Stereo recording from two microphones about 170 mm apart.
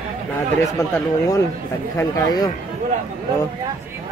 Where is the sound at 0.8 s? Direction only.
20° left (ahead or behind).